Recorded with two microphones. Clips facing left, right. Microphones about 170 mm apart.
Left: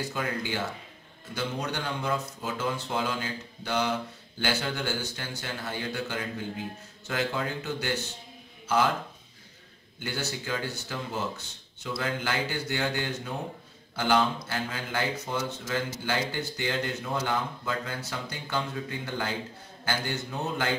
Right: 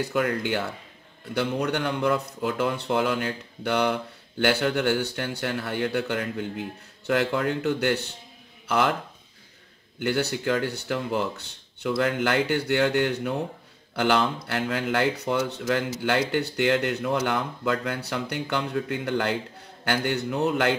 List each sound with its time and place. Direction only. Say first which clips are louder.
0.0 s speech: right 7 dB; 65° right (ahead or behind)
9.9 s speech: right 8 dB; 60° right (ahead or behind)